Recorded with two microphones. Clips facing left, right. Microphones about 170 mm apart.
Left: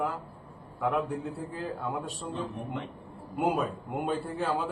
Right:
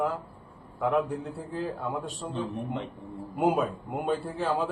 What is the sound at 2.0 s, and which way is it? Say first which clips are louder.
A man's voice: right 2 dB; 5° right (ahead or behind).